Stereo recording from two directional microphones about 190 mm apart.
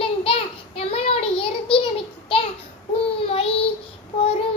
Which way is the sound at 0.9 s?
30° left (ahead or behind).